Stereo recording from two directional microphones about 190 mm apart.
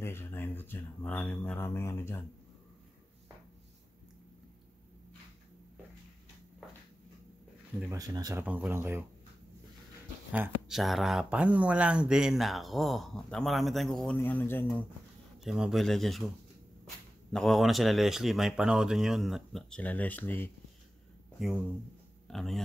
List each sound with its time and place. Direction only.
0.0 s speech: 10° left (ahead or behind)
7.9 s speech: 20° right (ahead or behind)
8.5 s speech: 10° right (ahead or behind)
10.3 s speech: 5° right (ahead or behind); by 14.9 s 10° left (ahead or behind)
15.4 s speech: 5° right (ahead or behind)
17.3 s speech: centre (ahead or behind)
21.4 s speech: 5° right (ahead or behind)